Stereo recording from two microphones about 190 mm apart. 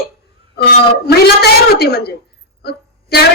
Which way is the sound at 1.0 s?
55° left (ahead or behind).